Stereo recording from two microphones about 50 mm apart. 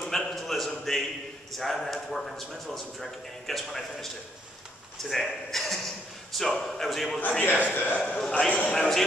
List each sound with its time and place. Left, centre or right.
0.0 s a sound: centre
0.9 s a man's voice: centre
7.2 s a man's voice: left
8.2 s a man's voice: centre
8.5 s a man's voice: left
8.7 s a man's voice: centre